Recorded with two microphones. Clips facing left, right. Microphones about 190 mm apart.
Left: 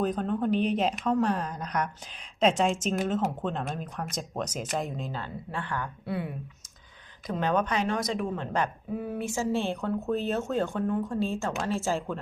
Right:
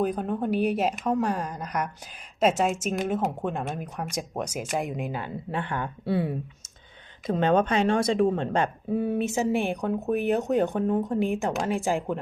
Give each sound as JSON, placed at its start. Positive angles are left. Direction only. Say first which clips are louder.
{"t": 0.0, "sound": "a woman's voice", "louder": "right 1 dB", "side_deg": -10}
{"t": 7.3, "sound": "a woman's voice", "louder": "right 5 dB", "side_deg": -25}